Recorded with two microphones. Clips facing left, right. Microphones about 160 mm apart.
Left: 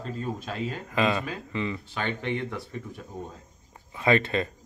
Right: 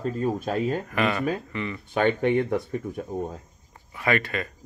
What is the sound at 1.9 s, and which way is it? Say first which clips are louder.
A man's voice: right 9 dB; 50° right (ahead or behind).